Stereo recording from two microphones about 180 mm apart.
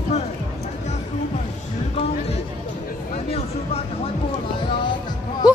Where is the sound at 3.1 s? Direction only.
35° left (ahead or behind).